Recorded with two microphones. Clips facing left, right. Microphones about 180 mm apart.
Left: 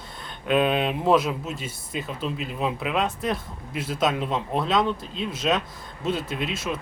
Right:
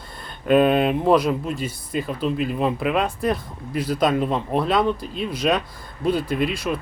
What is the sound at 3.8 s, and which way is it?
Speech, 25° left (ahead or behind).